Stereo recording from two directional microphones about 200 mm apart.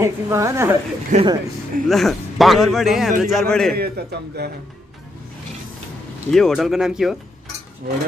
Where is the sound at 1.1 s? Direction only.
40° right (ahead or behind).